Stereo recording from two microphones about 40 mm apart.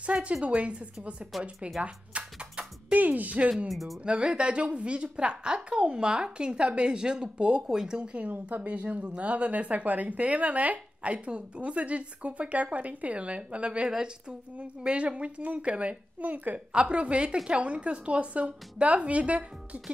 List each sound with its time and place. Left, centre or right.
0.0 s speech: right
1.3 s speech: centre
1.8 s a sound: right
3.0 s speech: right
3.6 s speech: centre
4.0 s a woman's voice: right
8.3 s speech: right
16.2 s a woman's voice: right
16.5 s a woman's voice: right